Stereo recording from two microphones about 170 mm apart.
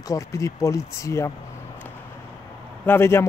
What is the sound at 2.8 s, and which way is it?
Speech, 15° left (ahead or behind).